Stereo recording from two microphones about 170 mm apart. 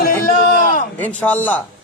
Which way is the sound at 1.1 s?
10° left (ahead or behind).